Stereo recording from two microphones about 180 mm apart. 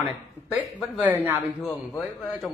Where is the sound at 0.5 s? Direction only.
5° left (ahead or behind).